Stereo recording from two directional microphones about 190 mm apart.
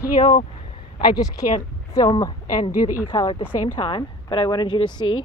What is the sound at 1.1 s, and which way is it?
A woman's voice, 20° left (ahead or behind).